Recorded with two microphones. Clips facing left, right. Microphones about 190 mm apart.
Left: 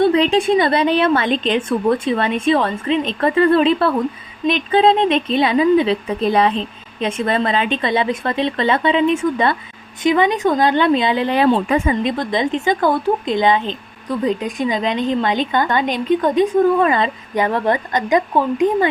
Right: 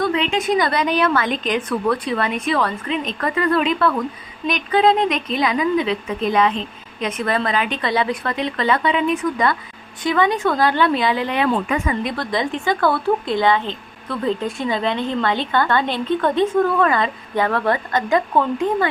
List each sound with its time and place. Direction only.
0.0 s a woman's voice: 35° left (ahead or behind); by 18.9 s 15° left (ahead or behind)